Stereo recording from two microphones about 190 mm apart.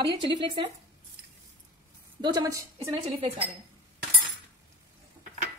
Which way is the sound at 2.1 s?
20° right (ahead or behind).